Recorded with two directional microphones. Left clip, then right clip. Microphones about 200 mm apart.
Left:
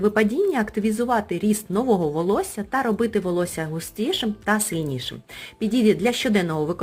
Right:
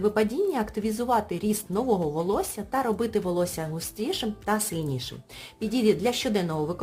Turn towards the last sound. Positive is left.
turn(degrees=15)  # may be behind; listen again after turning